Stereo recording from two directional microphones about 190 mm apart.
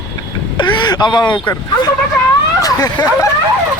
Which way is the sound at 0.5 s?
20° left (ahead or behind).